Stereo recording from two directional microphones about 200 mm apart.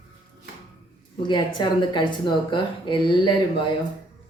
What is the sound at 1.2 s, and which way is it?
Speech, 25° left (ahead or behind).